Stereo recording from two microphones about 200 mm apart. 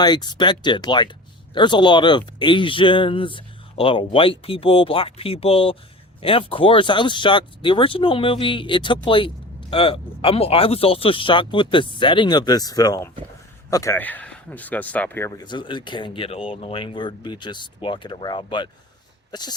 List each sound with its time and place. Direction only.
0.0 s speech: 20° left (ahead or behind)